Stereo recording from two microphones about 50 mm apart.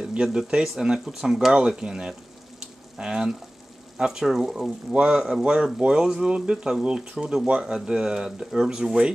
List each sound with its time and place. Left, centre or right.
0.1 s speech: centre
2.6 s frying: centre
4.0 s speech: centre